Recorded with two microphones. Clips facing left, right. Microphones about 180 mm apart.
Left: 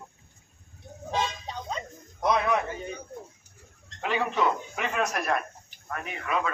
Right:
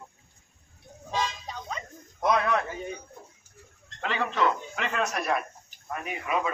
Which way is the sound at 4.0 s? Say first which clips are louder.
Left 1 dB; 10° left (ahead or behind).